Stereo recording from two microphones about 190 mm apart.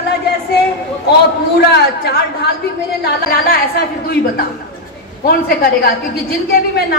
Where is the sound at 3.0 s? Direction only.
55° left (ahead or behind).